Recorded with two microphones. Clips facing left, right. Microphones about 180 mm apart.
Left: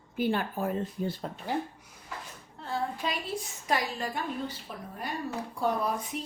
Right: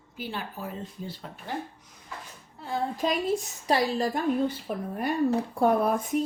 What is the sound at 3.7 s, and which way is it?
Speech, 35° right (ahead or behind).